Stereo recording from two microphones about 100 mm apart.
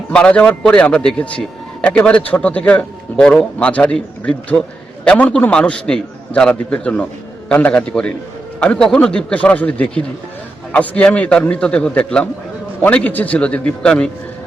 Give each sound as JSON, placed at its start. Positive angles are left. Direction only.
{"t": 0.1, "sound": "a man's voice", "side_deg": 10}